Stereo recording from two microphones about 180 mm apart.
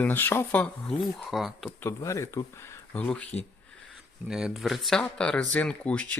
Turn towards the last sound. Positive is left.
turn(degrees=5)  # may be behind; listen again after turning